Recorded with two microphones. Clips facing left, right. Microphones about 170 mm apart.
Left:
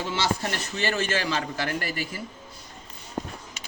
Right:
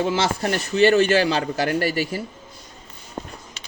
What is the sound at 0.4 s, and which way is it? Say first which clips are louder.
Speech: right 11 dB; 35° right (ahead or behind).